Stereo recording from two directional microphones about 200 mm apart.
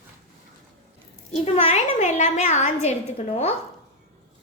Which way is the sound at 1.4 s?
30° left (ahead or behind).